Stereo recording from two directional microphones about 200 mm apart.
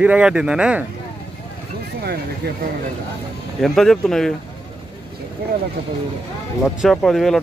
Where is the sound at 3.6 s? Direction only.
Centre (ahead or behind).